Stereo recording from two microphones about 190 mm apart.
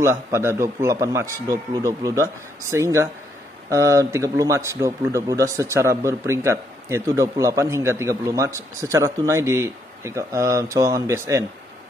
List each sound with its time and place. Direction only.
0.0 s a man's voice: 15° right (ahead or behind)